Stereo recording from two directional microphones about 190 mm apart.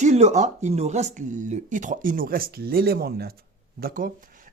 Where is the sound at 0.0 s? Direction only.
35° right (ahead or behind).